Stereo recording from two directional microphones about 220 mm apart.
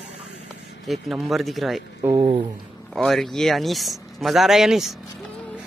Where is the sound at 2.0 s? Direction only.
20° right (ahead or behind).